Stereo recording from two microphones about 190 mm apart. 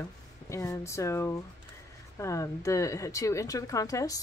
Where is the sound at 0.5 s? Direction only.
15° left (ahead or behind).